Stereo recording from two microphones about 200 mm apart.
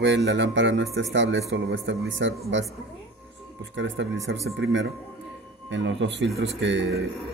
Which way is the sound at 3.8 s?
65° right (ahead or behind).